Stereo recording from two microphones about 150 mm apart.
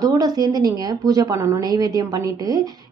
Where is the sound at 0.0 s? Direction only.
25° right (ahead or behind).